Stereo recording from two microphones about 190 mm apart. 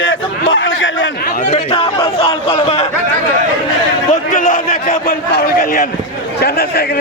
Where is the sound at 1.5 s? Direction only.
30° left (ahead or behind).